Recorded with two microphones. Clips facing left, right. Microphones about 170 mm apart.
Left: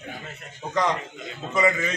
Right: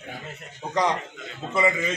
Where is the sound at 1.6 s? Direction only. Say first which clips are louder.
Left 1 dB; 10° right (ahead or behind).